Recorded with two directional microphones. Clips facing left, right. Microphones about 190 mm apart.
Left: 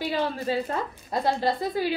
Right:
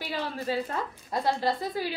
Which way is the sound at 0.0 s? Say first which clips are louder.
Left 5 dB; 20° left (ahead or behind).